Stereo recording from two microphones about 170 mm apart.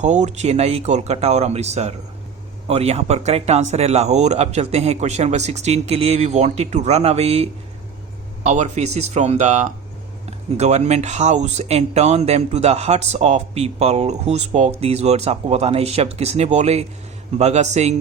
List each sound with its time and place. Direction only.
0.0 s speech: 45° right (ahead or behind)